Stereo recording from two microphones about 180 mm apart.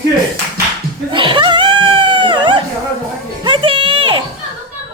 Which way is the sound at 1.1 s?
30° right (ahead or behind).